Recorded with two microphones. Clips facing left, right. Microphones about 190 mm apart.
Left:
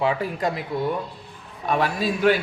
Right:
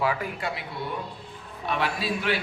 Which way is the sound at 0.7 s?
45° left (ahead or behind).